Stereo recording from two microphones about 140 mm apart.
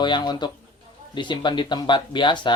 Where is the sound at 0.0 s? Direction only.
30° left (ahead or behind).